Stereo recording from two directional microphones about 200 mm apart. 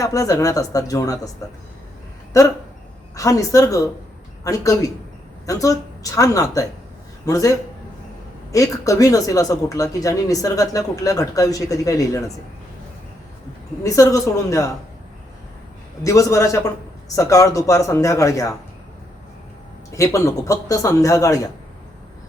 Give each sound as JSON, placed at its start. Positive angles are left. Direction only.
{"t": 0.0, "sound": "speech", "side_deg": 15}
{"t": 2.3, "sound": "speech", "side_deg": 15}
{"t": 8.5, "sound": "speech", "side_deg": 15}
{"t": 13.8, "sound": "speech", "side_deg": 15}
{"t": 16.0, "sound": "speech", "side_deg": 15}
{"t": 19.9, "sound": "speech", "side_deg": 15}